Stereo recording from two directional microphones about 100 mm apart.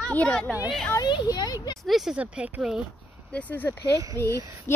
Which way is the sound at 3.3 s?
15° left (ahead or behind).